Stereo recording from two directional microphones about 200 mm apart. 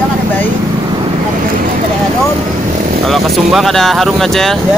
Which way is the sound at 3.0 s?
Centre (ahead or behind).